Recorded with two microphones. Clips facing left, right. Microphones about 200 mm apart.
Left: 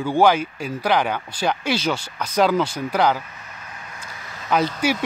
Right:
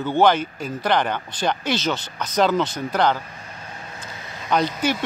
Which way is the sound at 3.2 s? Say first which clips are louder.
Right 2 dB; 30° right (ahead or behind).